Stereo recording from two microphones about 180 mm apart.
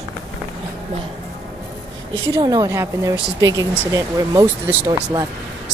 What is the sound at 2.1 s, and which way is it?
Speech, 25° right (ahead or behind).